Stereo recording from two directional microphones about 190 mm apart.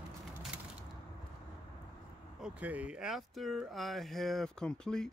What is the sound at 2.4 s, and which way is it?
Speech, 5° right (ahead or behind).